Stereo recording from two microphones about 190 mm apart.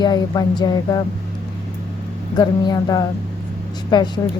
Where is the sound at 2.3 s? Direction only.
20° left (ahead or behind).